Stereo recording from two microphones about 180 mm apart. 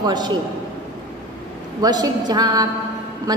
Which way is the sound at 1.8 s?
25° right (ahead or behind).